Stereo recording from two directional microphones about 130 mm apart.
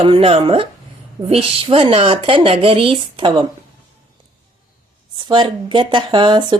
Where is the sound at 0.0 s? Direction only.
45° right (ahead or behind).